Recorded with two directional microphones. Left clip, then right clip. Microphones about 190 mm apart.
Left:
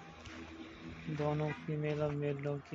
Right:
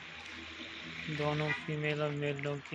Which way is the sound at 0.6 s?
45° left (ahead or behind).